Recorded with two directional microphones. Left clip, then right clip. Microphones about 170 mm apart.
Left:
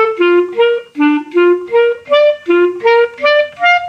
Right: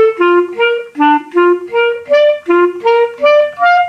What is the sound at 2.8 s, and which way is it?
Clarinet, 40° left (ahead or behind).